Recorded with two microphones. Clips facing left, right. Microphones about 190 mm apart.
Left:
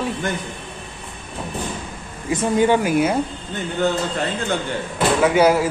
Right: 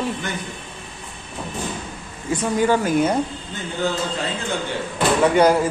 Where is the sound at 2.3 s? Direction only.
20° left (ahead or behind).